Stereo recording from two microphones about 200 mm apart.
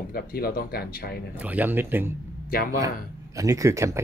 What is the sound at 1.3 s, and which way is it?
Speech, 10° right (ahead or behind).